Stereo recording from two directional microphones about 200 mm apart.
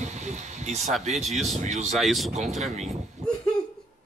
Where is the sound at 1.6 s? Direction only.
35° right (ahead or behind).